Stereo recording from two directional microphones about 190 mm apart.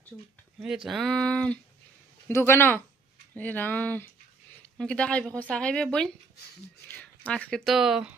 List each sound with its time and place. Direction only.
0.6 s speech: centre (ahead or behind)